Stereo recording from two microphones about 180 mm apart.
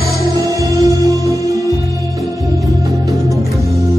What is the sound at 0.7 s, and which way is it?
Music, 20° right (ahead or behind).